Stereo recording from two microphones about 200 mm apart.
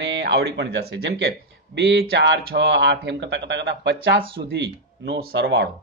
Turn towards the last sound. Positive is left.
turn(degrees=-60)  # may be behind; listen again after turning